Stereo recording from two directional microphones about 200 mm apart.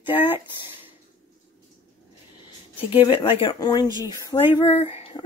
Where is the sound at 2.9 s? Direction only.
25° left (ahead or behind).